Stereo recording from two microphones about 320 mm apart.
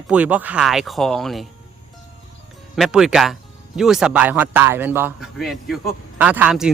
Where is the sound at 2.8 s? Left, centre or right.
Centre.